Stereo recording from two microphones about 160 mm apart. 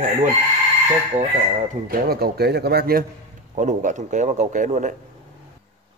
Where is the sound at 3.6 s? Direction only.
50° right (ahead or behind).